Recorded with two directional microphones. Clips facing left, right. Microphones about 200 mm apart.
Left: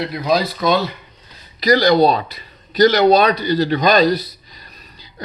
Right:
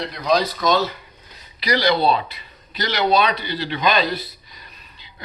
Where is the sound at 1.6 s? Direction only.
45° left (ahead or behind).